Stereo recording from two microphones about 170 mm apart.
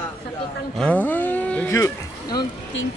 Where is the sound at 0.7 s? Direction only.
5° left (ahead or behind).